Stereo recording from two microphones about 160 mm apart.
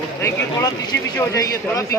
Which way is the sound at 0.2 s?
15° left (ahead or behind).